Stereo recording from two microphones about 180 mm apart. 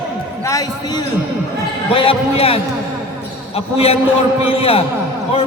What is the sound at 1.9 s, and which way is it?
Speech, 30° left (ahead or behind).